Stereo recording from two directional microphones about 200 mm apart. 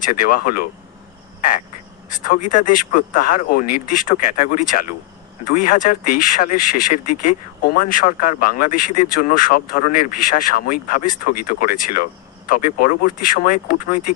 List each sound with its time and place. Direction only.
0.0 s speech: 45° left (ahead or behind)
2.0 s speech: 40° left (ahead or behind)